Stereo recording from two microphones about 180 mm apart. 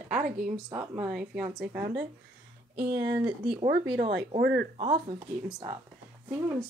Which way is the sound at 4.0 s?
75° right (ahead or behind).